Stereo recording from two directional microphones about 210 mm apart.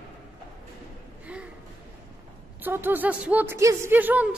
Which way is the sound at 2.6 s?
10° right (ahead or behind).